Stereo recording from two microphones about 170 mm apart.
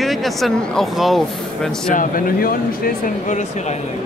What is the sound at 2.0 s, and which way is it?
Speech, 55° left (ahead or behind).